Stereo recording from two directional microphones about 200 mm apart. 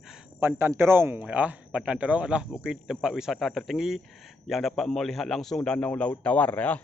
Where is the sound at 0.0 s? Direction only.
5° right (ahead or behind).